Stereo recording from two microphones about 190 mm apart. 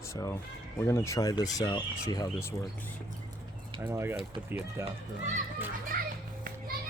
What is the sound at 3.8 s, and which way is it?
Speech, 10° right (ahead or behind).